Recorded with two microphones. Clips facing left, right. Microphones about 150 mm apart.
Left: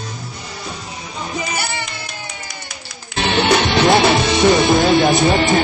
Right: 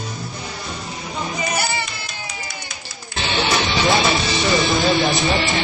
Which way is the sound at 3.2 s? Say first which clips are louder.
Left 5 dB; 60° left (ahead or behind).